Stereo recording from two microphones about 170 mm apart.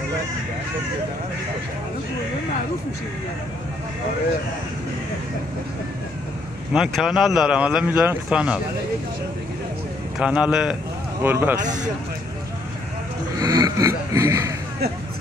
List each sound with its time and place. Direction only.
6.7 s speech: 5° right (ahead or behind)
10.1 s a man's voice: 5° right (ahead or behind)
11.6 s speech: 45° right (ahead or behind)
13.4 s speech: 20° right (ahead or behind)